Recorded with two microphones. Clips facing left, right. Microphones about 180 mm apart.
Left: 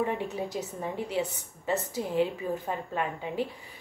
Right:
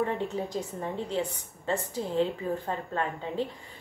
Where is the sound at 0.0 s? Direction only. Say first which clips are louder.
Right 1 dB; 15° left (ahead or behind).